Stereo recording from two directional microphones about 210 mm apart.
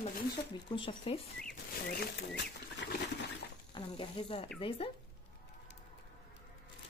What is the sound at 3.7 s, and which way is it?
Speech, 25° left (ahead or behind).